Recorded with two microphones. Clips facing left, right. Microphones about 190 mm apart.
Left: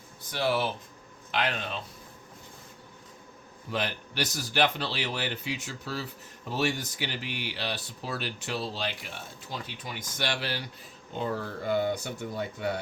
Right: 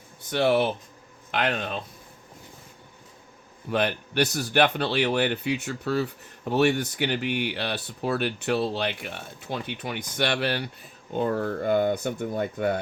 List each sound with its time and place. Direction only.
0.3 s speech: 65° right (ahead or behind)
3.7 s speech: 60° right (ahead or behind)